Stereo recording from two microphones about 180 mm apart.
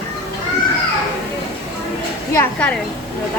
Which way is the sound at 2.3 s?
10° left (ahead or behind).